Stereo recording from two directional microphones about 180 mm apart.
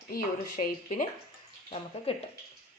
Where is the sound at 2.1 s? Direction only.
35° left (ahead or behind).